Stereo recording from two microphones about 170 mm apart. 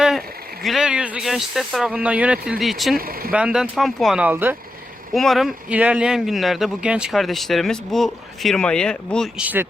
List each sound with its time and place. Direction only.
0.0 s speech: centre (ahead or behind)
3.0 s speech: 60° right (ahead or behind)
3.3 s speech: 5° right (ahead or behind)
5.1 s speech: centre (ahead or behind)
9.4 s speech: 10° right (ahead or behind)